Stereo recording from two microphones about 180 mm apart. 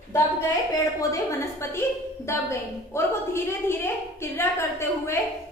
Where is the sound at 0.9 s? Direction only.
15° left (ahead or behind).